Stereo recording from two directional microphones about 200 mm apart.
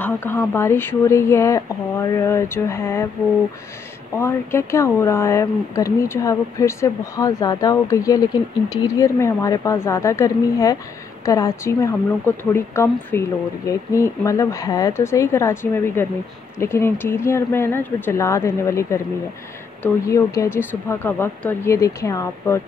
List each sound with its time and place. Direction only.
0.0 s speech: 10° left (ahead or behind)
4.2 s speech: 15° left (ahead or behind)